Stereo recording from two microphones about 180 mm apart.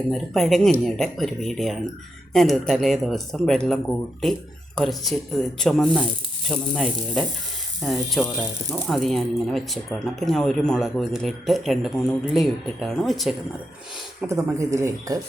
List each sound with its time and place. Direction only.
0.1 s speech: centre (ahead or behind)
14.2 s speech: 15° right (ahead or behind)